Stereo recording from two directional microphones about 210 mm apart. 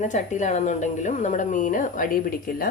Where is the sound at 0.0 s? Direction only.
35° left (ahead or behind).